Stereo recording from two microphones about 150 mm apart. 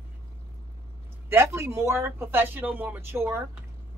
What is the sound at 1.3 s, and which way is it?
Speech, 15° right (ahead or behind).